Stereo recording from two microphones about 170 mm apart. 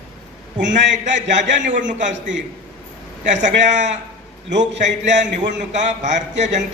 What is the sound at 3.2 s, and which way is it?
Speech, 45° right (ahead or behind).